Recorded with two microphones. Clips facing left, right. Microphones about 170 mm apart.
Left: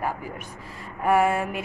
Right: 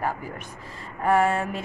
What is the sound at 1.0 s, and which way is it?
Speech, 10° left (ahead or behind).